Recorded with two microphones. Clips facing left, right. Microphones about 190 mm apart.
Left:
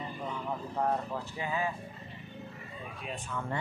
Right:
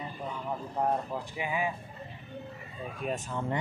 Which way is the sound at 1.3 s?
15° right (ahead or behind).